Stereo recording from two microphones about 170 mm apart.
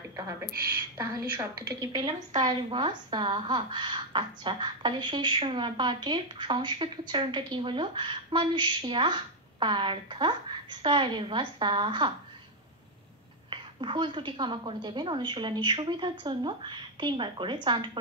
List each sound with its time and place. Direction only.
0.9 s a woman's voice: 20° right (ahead or behind)
13.5 s a woman's voice: 30° right (ahead or behind)